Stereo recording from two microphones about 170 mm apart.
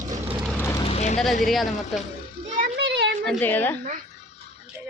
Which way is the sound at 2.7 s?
85° right.